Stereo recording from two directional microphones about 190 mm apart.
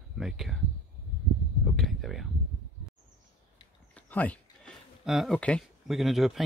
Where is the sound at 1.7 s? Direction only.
Centre (ahead or behind).